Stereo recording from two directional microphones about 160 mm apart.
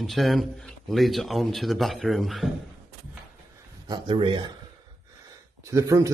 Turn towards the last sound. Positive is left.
turn(degrees=-20)  # may be behind; listen again after turning